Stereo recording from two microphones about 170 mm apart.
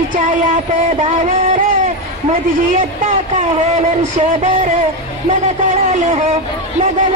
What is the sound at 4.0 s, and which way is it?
Music, 45° right (ahead or behind).